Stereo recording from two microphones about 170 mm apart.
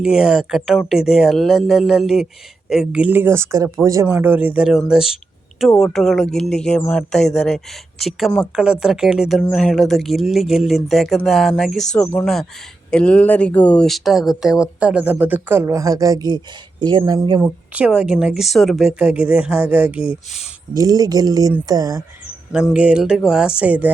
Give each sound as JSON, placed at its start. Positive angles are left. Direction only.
{"t": 0.0, "sound": "speech", "side_deg": -5}
{"t": 17.4, "sound": "speech", "side_deg": -5}
{"t": 20.7, "sound": "speech", "side_deg": -20}
{"t": 22.7, "sound": "speech", "side_deg": -5}